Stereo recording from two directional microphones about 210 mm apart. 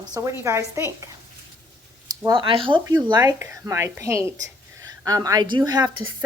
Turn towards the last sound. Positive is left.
turn(degrees=-20)  # may be behind; listen again after turning